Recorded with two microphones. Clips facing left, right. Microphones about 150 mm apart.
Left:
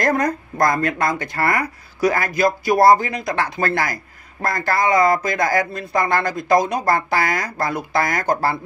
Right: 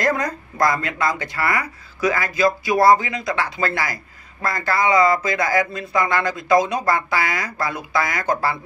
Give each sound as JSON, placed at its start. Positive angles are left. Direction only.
{"t": 0.0, "sound": "speech", "side_deg": 50}
{"t": 2.0, "sound": "a man's voice", "side_deg": 35}
{"t": 3.3, "sound": "speech", "side_deg": 50}